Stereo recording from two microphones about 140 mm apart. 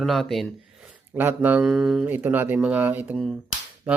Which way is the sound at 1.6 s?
Centre (ahead or behind).